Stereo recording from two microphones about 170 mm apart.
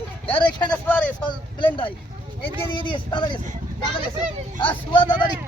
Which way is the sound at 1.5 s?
30° left (ahead or behind).